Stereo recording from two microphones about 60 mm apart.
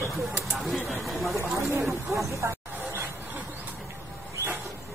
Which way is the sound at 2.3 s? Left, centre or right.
Right.